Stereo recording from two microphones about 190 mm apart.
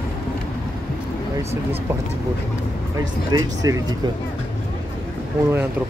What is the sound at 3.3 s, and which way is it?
Speech, 20° right (ahead or behind).